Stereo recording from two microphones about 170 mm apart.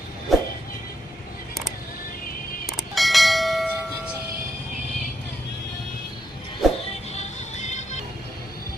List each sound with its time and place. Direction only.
0.3 s vehicle: centre (ahead or behind)
2.6 s church bell: centre (ahead or behind)
6.6 s music: centre (ahead or behind)
7.1 s music: 40° left (ahead or behind)